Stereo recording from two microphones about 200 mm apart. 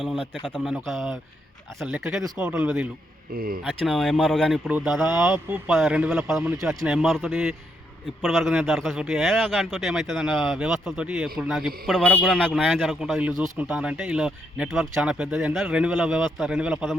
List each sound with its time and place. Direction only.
0.0 s a man's voice: centre (ahead or behind)
3.3 s speech: 45° right (ahead or behind)
3.6 s a man's voice: centre (ahead or behind)